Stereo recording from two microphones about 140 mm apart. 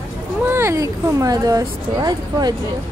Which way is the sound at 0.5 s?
20° right (ahead or behind).